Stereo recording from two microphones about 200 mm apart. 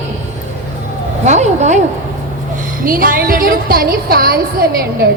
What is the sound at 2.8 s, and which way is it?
A woman's voice, 45° right (ahead or behind).